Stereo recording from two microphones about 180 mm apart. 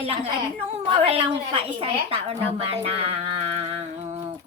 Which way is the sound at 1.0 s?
30° right (ahead or behind).